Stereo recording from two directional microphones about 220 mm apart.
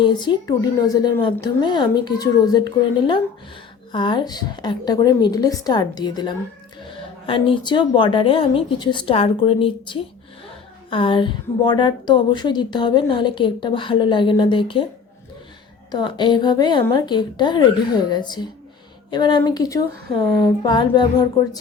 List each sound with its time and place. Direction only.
0.0 s a woman's voice: 20° left (ahead or behind)
15.9 s a woman's voice: 20° left (ahead or behind)